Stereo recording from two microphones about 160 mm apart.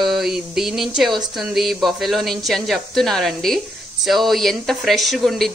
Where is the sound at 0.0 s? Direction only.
Centre (ahead or behind).